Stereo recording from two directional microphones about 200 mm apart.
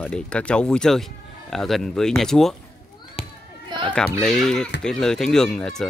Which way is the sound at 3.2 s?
30° left (ahead or behind).